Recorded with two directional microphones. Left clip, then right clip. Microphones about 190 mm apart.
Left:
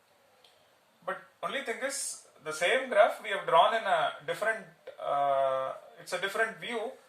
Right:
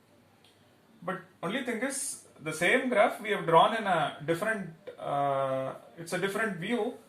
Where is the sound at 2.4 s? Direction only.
15° left (ahead or behind).